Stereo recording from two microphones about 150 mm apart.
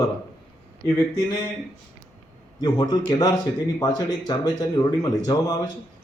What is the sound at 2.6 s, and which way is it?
A man's voice, 30° left (ahead or behind).